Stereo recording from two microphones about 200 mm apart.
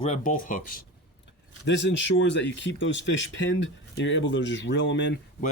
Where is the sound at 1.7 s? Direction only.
65° left (ahead or behind).